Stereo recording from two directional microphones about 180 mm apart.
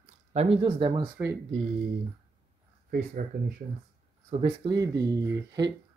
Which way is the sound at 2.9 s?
50° right (ahead or behind).